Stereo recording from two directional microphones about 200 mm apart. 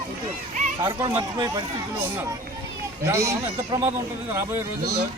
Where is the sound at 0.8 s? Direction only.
20° right (ahead or behind).